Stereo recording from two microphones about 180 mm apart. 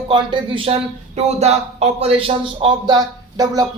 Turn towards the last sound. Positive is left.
turn(degrees=-20)  # may be behind; listen again after turning